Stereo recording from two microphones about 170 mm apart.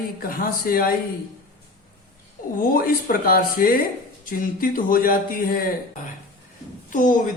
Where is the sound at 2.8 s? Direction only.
60° left (ahead or behind).